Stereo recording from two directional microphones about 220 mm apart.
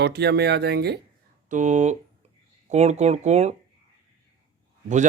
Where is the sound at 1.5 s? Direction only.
35° right (ahead or behind).